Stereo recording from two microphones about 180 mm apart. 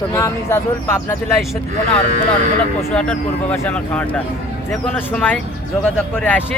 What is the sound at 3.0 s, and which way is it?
Speech, 5° left (ahead or behind).